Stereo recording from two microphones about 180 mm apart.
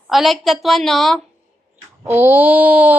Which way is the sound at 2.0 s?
10° right (ahead or behind).